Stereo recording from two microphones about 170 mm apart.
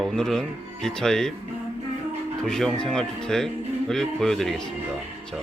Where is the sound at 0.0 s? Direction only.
5° left (ahead or behind).